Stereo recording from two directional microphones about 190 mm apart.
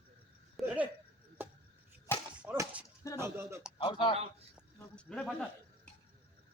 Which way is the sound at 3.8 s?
25° left (ahead or behind).